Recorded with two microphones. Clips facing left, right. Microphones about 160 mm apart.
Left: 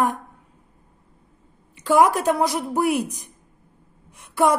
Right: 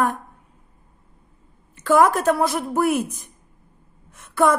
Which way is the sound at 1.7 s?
15° left (ahead or behind).